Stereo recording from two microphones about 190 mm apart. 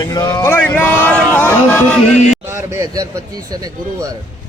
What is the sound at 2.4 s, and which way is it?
Speech, 15° right (ahead or behind).